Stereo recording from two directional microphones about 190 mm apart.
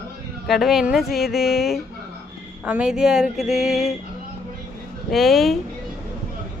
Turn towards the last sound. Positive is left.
turn(degrees=0)  # may be behind; listen again after turning